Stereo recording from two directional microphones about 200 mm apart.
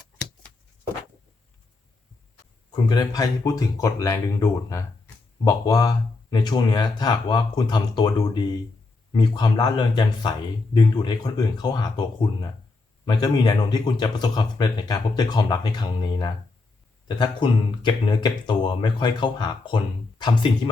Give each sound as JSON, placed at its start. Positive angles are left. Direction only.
{"t": 2.7, "sound": "speech", "side_deg": 20}